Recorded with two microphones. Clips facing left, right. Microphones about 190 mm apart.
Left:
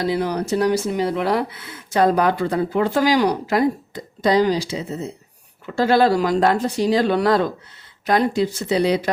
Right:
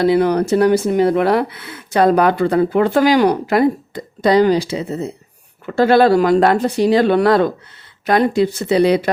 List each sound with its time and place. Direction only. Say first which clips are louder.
0.0 s speech: right 8 dB; 65° right (ahead or behind)